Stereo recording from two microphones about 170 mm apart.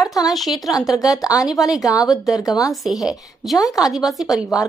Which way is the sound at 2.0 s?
Centre (ahead or behind).